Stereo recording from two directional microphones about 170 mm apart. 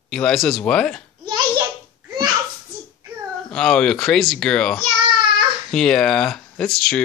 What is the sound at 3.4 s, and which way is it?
Speech, 5° left (ahead or behind).